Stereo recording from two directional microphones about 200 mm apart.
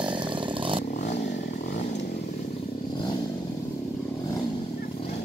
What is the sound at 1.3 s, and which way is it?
Motorcycle, 50° left (ahead or behind).